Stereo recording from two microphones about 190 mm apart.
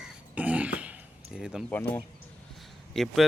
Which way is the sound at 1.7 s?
15° left (ahead or behind).